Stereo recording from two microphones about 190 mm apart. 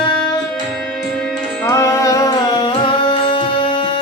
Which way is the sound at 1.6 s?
15° left (ahead or behind).